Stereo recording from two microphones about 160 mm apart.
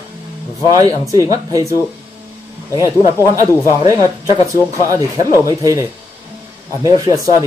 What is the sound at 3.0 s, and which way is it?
Speech, 20° right (ahead or behind).